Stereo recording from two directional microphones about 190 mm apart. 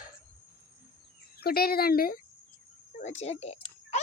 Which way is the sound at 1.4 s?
55° left (ahead or behind).